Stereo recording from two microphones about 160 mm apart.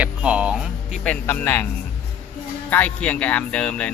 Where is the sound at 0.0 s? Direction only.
5° right (ahead or behind).